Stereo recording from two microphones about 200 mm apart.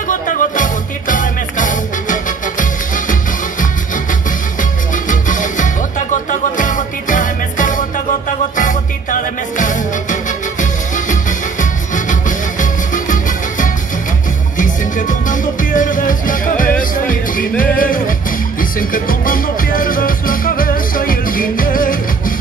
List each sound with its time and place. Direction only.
0.1 s music: 40° left (ahead or behind)